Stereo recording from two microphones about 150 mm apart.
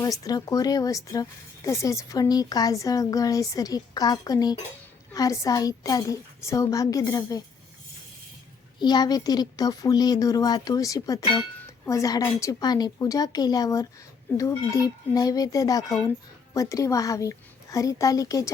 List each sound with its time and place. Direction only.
0.0 s speech: 25° left (ahead or behind)
8.8 s speech: 30° left (ahead or behind)